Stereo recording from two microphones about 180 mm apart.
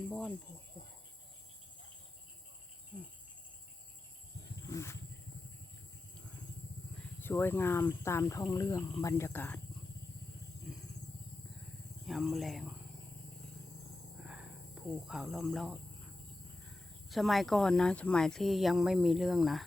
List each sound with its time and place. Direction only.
0.1 s speech: 5° left (ahead or behind)
4.7 s wild animals: 15° left (ahead or behind)
6.9 s speech: 10° left (ahead or behind)
10.7 s a sound: centre (ahead or behind)
12.0 s speech: centre (ahead or behind)
15.0 s speech: 5° right (ahead or behind)
17.1 s speech: centre (ahead or behind)